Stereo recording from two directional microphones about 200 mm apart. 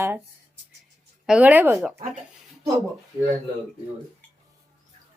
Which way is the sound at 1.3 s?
5° right (ahead or behind).